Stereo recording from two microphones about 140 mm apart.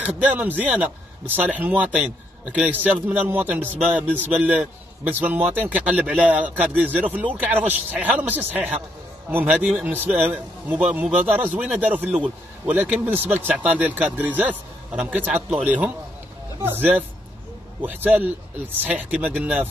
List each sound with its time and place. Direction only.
0.0 s speech: 10° right (ahead or behind)